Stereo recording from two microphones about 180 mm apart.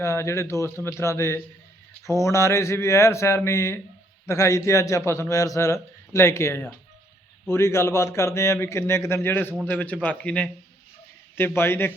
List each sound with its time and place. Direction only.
0.0 s a man's voice: 15° left (ahead or behind)